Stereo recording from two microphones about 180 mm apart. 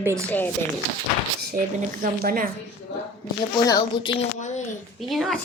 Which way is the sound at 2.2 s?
50° right (ahead or behind).